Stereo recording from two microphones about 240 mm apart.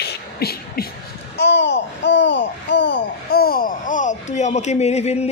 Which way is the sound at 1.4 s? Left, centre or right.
Left.